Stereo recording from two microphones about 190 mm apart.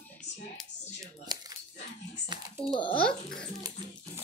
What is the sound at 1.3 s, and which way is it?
Speech, 20° right (ahead or behind).